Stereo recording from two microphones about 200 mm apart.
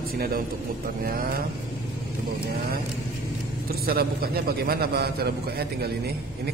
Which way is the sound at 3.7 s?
50° right (ahead or behind).